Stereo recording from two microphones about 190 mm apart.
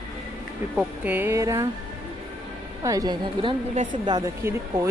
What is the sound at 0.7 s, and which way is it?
Speech, 10° right (ahead or behind).